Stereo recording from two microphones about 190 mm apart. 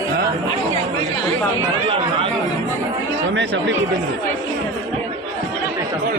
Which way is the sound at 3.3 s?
70° right (ahead or behind).